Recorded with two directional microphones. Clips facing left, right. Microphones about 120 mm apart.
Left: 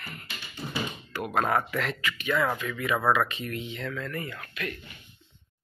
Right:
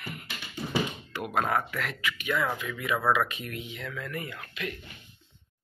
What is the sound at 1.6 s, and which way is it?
Speech, 5° right (ahead or behind).